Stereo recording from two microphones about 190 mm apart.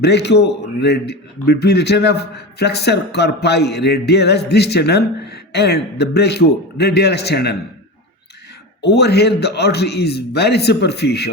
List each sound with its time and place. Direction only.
0.0 s a man's voice: 60° left (ahead or behind)
8.8 s a man's voice: 60° left (ahead or behind)